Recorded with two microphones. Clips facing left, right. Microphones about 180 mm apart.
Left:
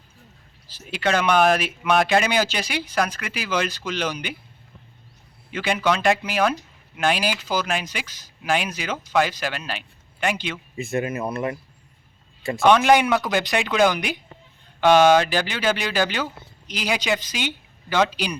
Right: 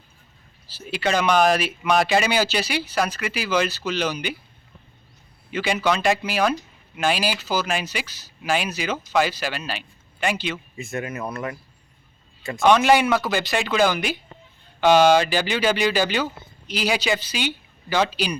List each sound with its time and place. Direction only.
0.7 s speech: 10° right (ahead or behind)
5.5 s speech: 5° right (ahead or behind)
10.9 s speech: 25° left (ahead or behind)
12.6 s speech: 5° right (ahead or behind)